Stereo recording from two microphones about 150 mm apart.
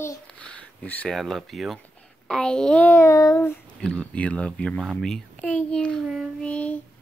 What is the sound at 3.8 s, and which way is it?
A child's voice, 5° left (ahead or behind).